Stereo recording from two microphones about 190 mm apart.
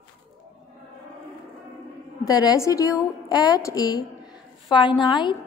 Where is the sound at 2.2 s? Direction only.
20° left (ahead or behind).